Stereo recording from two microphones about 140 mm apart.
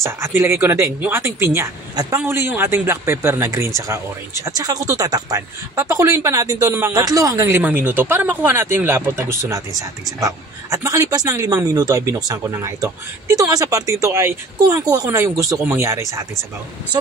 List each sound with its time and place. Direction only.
0.0 s a man's voice: 20° right (ahead or behind)